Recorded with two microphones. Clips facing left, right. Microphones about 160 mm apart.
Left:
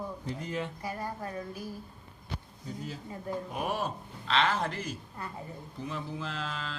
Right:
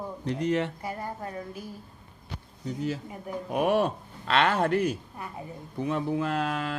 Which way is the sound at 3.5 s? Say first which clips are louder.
Right 12 dB; 65° right (ahead or behind).